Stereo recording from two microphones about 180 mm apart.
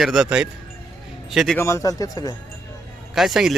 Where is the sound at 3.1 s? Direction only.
Centre (ahead or behind).